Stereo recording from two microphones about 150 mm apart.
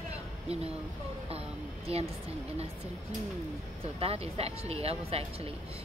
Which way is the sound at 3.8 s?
40° right (ahead or behind).